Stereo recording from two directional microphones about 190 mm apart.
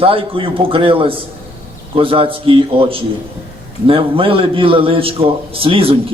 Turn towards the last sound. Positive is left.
turn(degrees=-30)  # may be behind; listen again after turning